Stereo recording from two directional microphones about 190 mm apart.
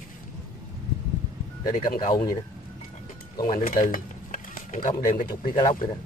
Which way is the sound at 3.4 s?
45° left (ahead or behind).